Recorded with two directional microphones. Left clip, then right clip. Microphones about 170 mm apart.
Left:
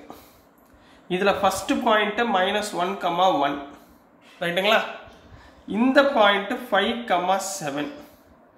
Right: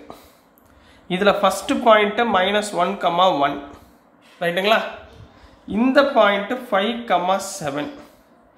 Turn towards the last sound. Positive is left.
turn(degrees=-25)  # may be behind; listen again after turning